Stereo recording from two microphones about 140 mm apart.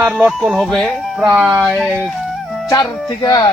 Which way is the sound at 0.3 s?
Centre (ahead or behind).